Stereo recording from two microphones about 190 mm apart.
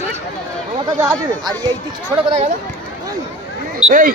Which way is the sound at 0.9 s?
20° right (ahead or behind).